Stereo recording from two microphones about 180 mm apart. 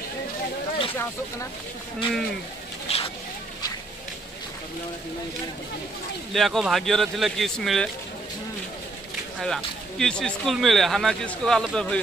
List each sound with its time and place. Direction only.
2.9 s speech: 35° left (ahead or behind)
6.3 s speech: centre (ahead or behind)
9.4 s speech: 5° left (ahead or behind)